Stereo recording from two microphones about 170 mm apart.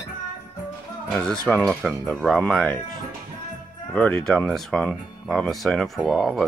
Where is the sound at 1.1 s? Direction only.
5° left (ahead or behind).